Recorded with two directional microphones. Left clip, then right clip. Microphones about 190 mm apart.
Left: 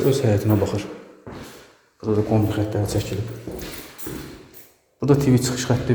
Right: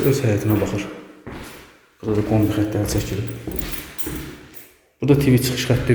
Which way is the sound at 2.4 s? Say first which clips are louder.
Right 3 dB; centre (ahead or behind).